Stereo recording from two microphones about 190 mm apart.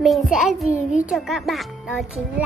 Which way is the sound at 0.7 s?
40° left (ahead or behind).